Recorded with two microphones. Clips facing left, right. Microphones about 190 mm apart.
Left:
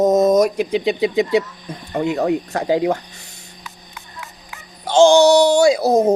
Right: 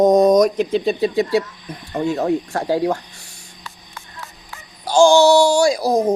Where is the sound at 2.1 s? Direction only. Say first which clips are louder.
Even; 15° left (ahead or behind).